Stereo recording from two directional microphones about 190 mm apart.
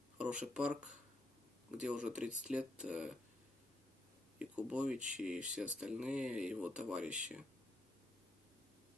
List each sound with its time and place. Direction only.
0.2 s speech: 5° right (ahead or behind)
1.8 s speech: 5° right (ahead or behind)
4.4 s speech: 5° right (ahead or behind)
4.9 s speech: 40° right (ahead or behind)
5.2 s speech: 5° right (ahead or behind)